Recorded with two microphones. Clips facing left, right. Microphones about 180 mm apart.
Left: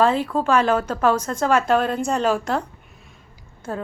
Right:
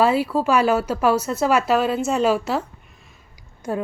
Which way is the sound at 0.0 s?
10° right (ahead or behind).